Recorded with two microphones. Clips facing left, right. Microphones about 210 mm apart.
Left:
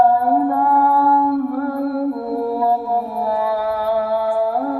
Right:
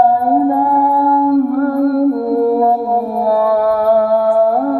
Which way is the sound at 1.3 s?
50° right (ahead or behind).